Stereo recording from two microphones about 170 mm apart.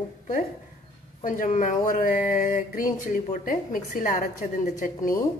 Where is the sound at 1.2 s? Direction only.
50° left (ahead or behind).